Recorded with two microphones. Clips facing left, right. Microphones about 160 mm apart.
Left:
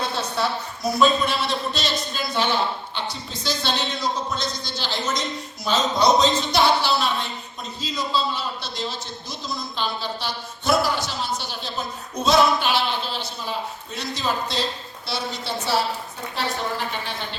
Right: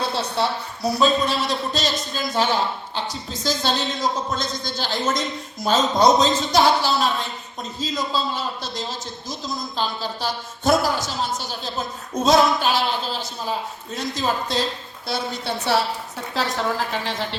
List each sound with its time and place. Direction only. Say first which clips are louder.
0.2 s a woman's voice: right 2 dB; 35° right (ahead or behind); by 15.8 s 60° right (ahead or behind)
16.3 s a woman's voice: right 3 dB; 90° right